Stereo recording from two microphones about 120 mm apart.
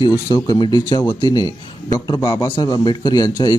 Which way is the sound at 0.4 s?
35° left (ahead or behind).